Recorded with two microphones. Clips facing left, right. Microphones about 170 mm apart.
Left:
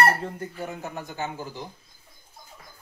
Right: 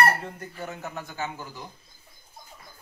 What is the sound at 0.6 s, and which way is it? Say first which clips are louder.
Speech: right 1 dB; 15° left (ahead or behind).